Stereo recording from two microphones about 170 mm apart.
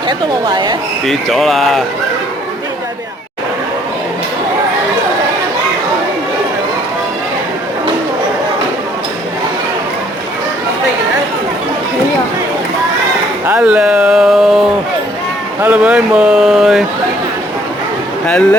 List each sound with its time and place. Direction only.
0.1 s speech: 25° right (ahead or behind)
1.0 s speech: centre (ahead or behind)
13.4 s speech: 10° right (ahead or behind)